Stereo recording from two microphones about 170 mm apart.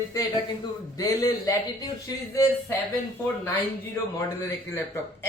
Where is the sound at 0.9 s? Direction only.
20° left (ahead or behind).